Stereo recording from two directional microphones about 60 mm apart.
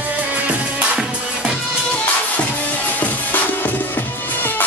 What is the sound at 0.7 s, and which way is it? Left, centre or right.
Music, centre.